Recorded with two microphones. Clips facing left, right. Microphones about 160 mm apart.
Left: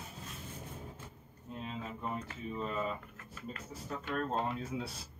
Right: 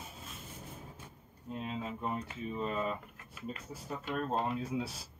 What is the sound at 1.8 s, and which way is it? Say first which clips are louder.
Speech: right 1 dB; 15° right (ahead or behind).